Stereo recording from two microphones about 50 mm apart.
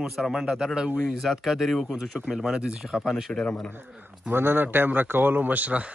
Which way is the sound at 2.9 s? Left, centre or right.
Centre.